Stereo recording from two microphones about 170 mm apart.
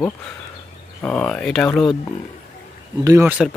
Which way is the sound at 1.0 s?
5° left (ahead or behind).